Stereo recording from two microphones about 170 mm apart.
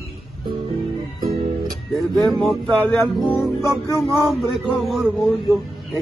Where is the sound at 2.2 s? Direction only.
Centre (ahead or behind).